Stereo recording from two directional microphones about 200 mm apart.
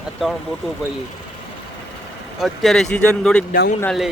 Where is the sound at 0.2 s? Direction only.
5° right (ahead or behind).